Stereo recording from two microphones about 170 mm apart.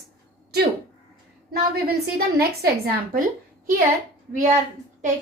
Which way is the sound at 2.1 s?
65° right (ahead or behind).